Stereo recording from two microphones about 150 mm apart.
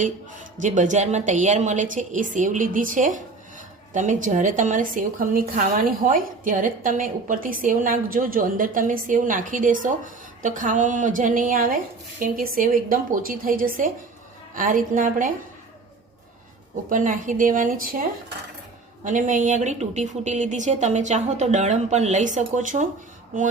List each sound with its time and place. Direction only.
0.6 s a woman's voice: 55° right (ahead or behind)
16.9 s a woman's voice: 60° right (ahead or behind)
19.0 s a woman's voice: 60° right (ahead or behind)